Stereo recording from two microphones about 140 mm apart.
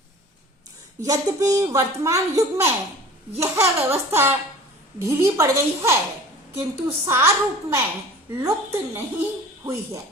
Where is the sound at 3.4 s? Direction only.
20° right (ahead or behind).